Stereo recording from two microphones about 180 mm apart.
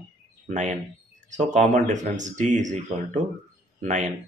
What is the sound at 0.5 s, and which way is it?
Speech, 40° right (ahead or behind).